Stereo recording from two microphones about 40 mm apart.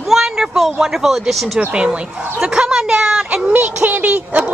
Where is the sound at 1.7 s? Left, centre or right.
Right.